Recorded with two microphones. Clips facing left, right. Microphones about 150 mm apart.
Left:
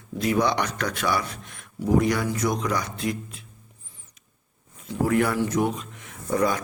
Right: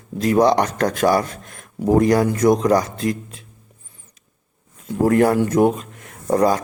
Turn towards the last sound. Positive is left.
turn(degrees=-40)  # may be behind; listen again after turning